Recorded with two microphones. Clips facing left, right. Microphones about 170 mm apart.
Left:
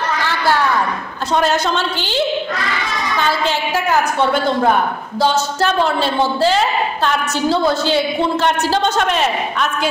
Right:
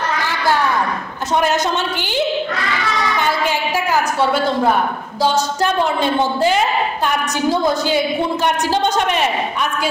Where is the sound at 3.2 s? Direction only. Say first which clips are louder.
Left 3 dB; 15° right (ahead or behind).